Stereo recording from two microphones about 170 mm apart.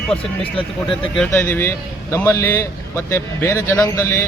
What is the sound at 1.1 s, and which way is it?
A man's voice, 10° left (ahead or behind).